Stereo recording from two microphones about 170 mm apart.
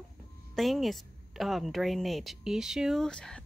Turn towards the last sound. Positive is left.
turn(degrees=5)  # may be behind; listen again after turning